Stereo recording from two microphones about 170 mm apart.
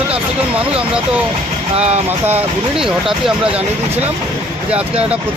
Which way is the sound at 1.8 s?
40° right (ahead or behind).